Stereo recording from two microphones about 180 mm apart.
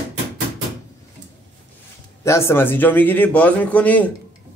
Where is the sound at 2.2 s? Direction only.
15° left (ahead or behind).